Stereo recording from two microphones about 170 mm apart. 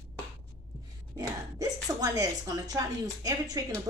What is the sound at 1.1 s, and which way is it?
A woman's voice, 20° right (ahead or behind).